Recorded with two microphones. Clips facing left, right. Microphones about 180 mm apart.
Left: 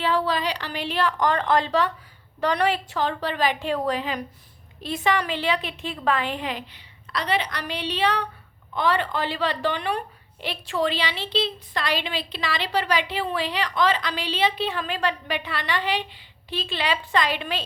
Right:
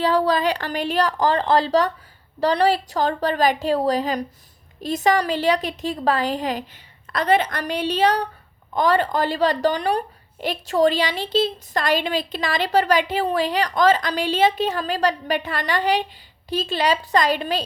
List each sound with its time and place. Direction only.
0.0 s a woman's voice: 40° right (ahead or behind)